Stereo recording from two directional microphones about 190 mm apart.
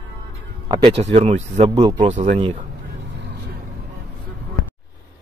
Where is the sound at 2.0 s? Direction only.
40° right (ahead or behind).